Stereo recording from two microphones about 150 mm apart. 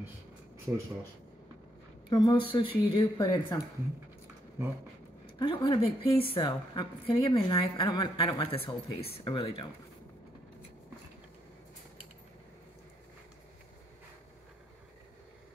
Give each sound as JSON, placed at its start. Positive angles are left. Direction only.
{"t": 2.0, "sound": "speech", "side_deg": 30}
{"t": 3.0, "sound": "speech", "side_deg": 25}
{"t": 5.4, "sound": "speech", "side_deg": 30}